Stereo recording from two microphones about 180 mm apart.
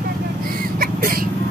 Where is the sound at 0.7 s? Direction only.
55° right (ahead or behind).